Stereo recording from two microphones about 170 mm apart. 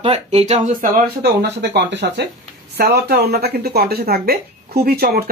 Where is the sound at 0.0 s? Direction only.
35° right (ahead or behind); by 1.1 s 50° right (ahead or behind).